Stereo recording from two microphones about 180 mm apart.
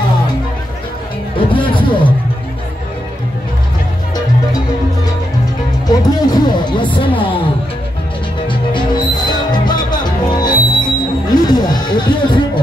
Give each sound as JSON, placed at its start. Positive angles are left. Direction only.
{"t": 1.5, "sound": "speech", "side_deg": 25}
{"t": 5.9, "sound": "speech", "side_deg": 20}
{"t": 8.5, "sound": "music", "side_deg": 25}